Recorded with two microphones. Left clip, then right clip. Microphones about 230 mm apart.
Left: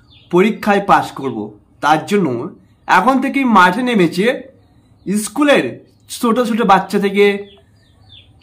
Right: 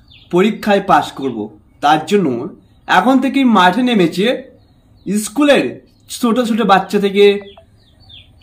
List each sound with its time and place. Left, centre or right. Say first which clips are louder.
0.3 s a man's voice: even; centre